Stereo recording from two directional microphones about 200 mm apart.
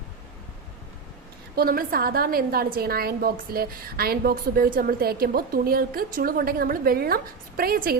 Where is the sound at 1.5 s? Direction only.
50° right (ahead or behind).